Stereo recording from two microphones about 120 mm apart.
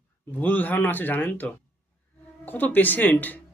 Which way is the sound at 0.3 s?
15° left (ahead or behind).